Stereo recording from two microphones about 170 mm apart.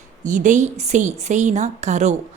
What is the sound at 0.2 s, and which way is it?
A woman's voice, 45° right (ahead or behind).